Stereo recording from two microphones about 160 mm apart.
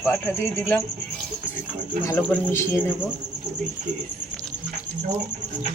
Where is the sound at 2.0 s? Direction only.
10° left (ahead or behind).